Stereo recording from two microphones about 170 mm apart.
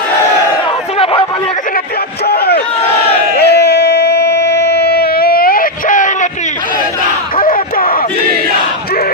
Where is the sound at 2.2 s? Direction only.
65° left (ahead or behind); by 6.1 s 50° left (ahead or behind).